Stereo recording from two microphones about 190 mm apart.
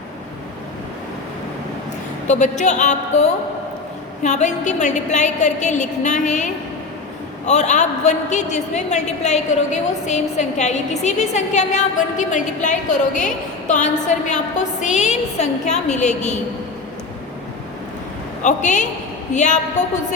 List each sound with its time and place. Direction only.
2.2 s a man's voice: 40° left (ahead or behind)
18.4 s a man's voice: 40° left (ahead or behind)